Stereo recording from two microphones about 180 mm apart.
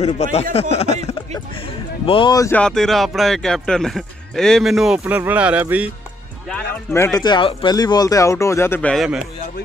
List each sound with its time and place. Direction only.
0.0 s speech: 35° left (ahead or behind); by 2.6 s 15° left (ahead or behind)
2.6 s speech: centre (ahead or behind)
6.5 s a man's voice: 15° left (ahead or behind)
7.2 s speech: 25° left (ahead or behind)
8.9 s speech: centre (ahead or behind)